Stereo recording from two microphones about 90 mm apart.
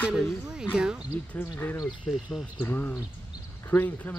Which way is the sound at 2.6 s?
25° left (ahead or behind).